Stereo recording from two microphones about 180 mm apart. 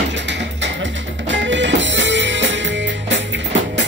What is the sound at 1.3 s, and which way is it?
Music, 90° right.